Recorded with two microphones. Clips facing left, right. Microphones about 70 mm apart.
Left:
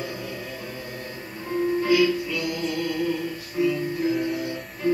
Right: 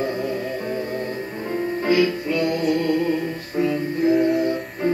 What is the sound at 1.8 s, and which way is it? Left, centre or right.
Music, right.